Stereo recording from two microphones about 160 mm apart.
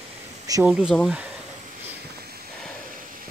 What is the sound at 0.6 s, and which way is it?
Speech, 5° right (ahead or behind).